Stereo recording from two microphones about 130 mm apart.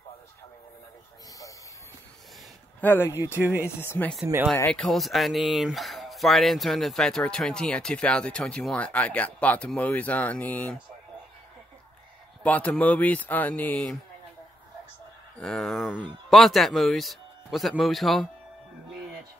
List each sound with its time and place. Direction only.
2.8 s speech: 15° left (ahead or behind)
3.3 s speech: 15° right (ahead or behind)
3.6 s speech: 20° left (ahead or behind)
4.6 s speech: 5° left (ahead or behind)
12.4 s speech: 10° left (ahead or behind)
15.3 s speech: 5° left (ahead or behind)